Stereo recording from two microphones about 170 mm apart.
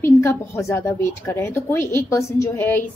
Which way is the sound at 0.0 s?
15° left (ahead or behind).